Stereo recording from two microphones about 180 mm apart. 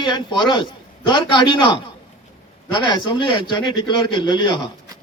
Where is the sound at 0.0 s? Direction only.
25° left (ahead or behind).